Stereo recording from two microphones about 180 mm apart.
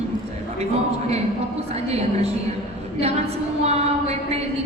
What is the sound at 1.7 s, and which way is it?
Speech, 35° right (ahead or behind).